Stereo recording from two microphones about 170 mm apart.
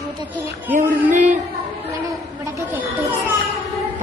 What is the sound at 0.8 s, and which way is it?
Music, 45° right (ahead or behind).